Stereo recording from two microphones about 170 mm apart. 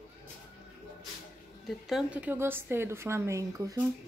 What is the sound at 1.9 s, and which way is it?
Speech, 5° right (ahead or behind).